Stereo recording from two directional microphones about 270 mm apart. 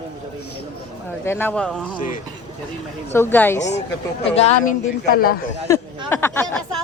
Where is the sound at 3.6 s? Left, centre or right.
Left.